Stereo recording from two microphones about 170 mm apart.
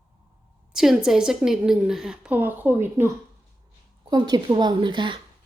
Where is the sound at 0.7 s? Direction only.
5° right (ahead or behind).